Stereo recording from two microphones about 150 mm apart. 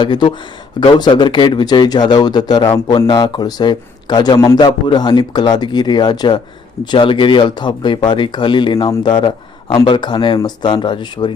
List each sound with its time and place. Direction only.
0.0 s speech: 30° left (ahead or behind)